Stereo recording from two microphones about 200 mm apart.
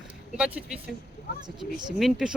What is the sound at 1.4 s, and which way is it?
Speech, 20° right (ahead or behind).